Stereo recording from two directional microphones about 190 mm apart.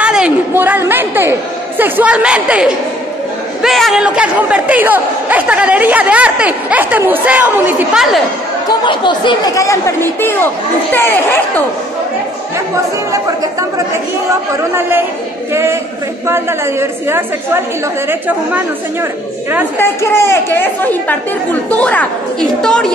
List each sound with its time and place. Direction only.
0.0 s a sound: 5° right (ahead or behind)
1.8 s a woman's voice: 10° right (ahead or behind)
8.6 s speech: 25° left (ahead or behind)
13.1 s speech: 15° right (ahead or behind)
19.8 s a woman's voice: 15° left (ahead or behind)